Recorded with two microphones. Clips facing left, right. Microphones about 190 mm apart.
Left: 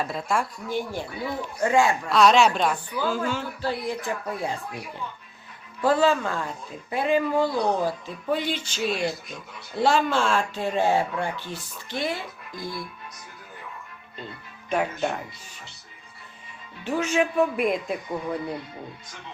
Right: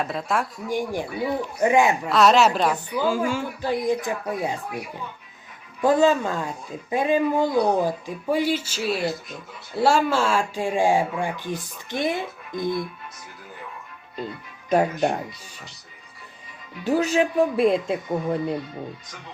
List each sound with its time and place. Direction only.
0.0 s speech: centre (ahead or behind)
0.7 s speech: 15° right (ahead or behind)
2.0 s speech: centre (ahead or behind)
5.8 s speech: 15° right (ahead or behind)
16.8 s a woman's voice: 35° right (ahead or behind); by 18.6 s 20° right (ahead or behind)